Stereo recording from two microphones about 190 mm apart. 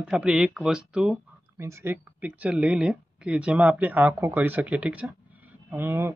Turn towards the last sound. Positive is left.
turn(degrees=-10)  # may be behind; listen again after turning